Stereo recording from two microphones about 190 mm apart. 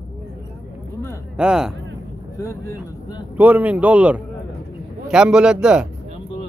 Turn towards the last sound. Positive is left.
turn(degrees=-5)  # may be behind; listen again after turning